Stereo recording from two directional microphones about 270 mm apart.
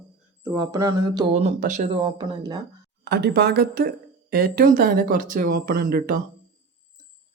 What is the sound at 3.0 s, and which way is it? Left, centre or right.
Speech, right.